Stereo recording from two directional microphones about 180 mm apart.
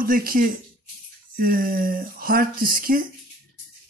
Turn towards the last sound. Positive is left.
turn(degrees=-50)  # may be behind; listen again after turning